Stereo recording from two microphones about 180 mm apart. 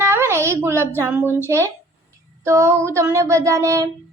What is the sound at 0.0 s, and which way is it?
A child's voice, 15° right (ahead or behind).